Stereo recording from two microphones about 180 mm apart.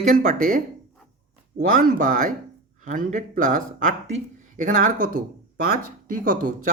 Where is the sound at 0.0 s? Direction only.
45° right (ahead or behind).